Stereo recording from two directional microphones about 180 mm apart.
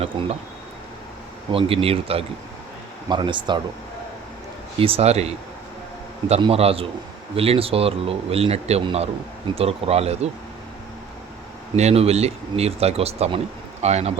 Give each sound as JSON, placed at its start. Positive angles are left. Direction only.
{"t": 0.0, "sound": "speech", "side_deg": -30}
{"t": 1.5, "sound": "speech", "side_deg": -30}
{"t": 4.8, "sound": "speech", "side_deg": -35}
{"t": 11.8, "sound": "speech", "side_deg": -35}